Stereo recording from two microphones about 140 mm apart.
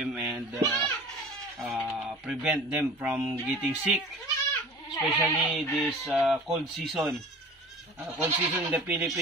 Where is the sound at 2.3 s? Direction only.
10° right (ahead or behind).